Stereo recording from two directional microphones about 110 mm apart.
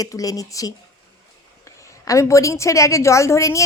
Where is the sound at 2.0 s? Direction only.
30° left (ahead or behind).